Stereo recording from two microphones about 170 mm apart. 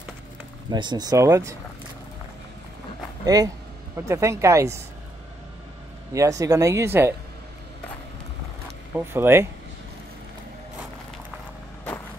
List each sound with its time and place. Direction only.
0.7 s speech: 25° right (ahead or behind)
3.3 s speech: 20° right (ahead or behind)
6.1 s speech: 20° right (ahead or behind)
8.9 s speech: 15° right (ahead or behind)